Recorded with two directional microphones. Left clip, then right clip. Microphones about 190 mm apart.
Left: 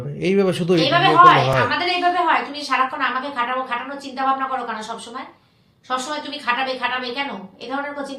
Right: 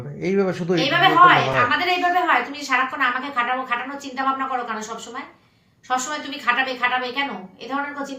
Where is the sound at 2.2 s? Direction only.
10° left (ahead or behind).